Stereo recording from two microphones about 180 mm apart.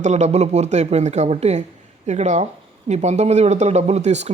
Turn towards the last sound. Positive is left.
turn(degrees=-40)  # may be behind; listen again after turning